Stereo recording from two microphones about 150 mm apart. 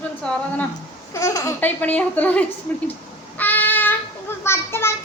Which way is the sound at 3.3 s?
10° left (ahead or behind).